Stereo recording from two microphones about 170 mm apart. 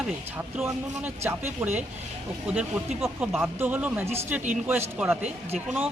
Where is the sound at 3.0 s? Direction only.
5° right (ahead or behind).